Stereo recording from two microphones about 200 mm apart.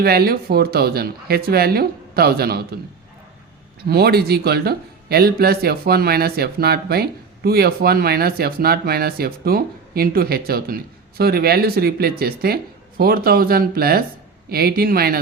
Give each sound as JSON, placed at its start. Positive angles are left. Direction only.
{"t": 0.0, "sound": "speech", "side_deg": -50}
{"t": 3.8, "sound": "speech", "side_deg": -50}